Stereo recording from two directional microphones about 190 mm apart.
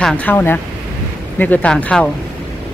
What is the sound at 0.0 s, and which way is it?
Speech, 10° left (ahead or behind).